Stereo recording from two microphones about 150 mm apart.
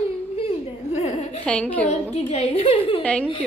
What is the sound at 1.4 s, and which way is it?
Speech, 5° left (ahead or behind).